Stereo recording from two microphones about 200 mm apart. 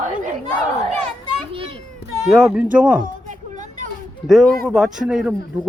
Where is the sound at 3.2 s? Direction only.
40° right (ahead or behind).